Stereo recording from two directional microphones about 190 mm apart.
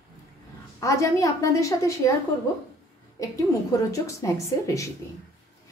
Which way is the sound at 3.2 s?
20° left (ahead or behind).